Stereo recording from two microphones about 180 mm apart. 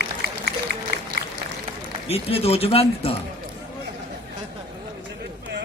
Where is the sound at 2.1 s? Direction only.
35° left (ahead or behind).